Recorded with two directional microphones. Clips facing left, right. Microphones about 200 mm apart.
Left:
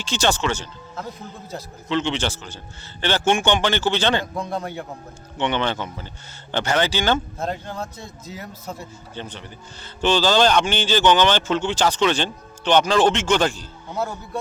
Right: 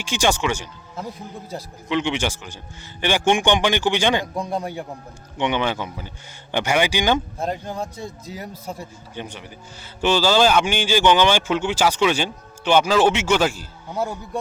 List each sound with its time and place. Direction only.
0.0 s a man's voice: 10° right (ahead or behind)